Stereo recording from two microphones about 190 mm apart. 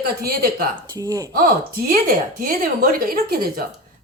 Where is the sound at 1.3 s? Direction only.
50° right (ahead or behind).